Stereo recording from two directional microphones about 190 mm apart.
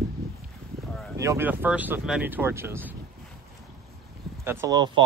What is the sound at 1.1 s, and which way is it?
Speech, 15° right (ahead or behind).